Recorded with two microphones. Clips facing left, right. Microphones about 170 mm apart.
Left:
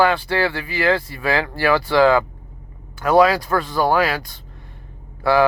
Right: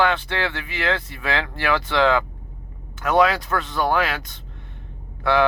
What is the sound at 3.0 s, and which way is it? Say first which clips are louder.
Speech: left 4 dB; 40° left (ahead or behind).